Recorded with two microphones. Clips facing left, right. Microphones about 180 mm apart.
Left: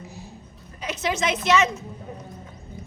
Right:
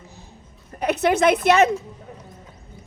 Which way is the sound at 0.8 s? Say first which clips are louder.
Right 8 dB; 60° right (ahead or behind).